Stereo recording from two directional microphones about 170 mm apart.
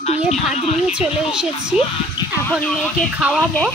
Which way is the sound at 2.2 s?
30° left (ahead or behind).